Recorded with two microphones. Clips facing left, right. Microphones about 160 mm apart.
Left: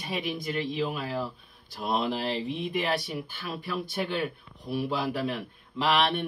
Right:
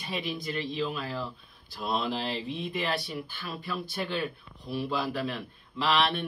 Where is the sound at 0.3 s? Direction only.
15° left (ahead or behind).